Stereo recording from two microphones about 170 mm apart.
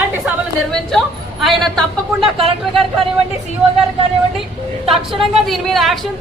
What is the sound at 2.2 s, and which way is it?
Speech, 35° right (ahead or behind).